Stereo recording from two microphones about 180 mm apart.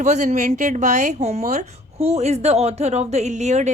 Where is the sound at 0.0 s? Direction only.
40° right (ahead or behind).